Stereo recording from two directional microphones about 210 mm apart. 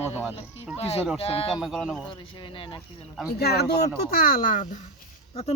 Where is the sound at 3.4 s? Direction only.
50° left (ahead or behind).